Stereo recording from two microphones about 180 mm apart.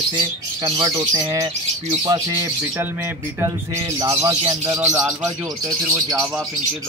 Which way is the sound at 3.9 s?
20° right (ahead or behind).